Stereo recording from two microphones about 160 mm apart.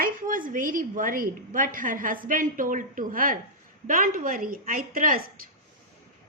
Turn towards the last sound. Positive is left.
turn(degrees=-60)  # may be behind; listen again after turning